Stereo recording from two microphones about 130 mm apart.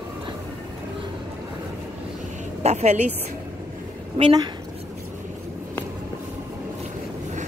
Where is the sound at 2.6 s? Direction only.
60° right (ahead or behind).